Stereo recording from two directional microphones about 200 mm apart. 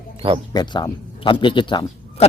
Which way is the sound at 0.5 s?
20° left (ahead or behind).